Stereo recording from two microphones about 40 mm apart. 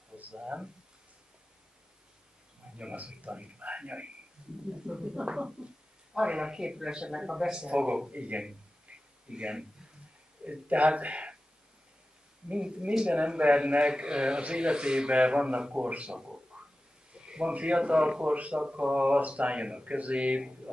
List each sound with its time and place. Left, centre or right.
0.3 s speech: right
2.8 s speech: right
7.6 s speech: right
12.4 s speech: right
16.2 s a sound: centre
17.1 s speech: right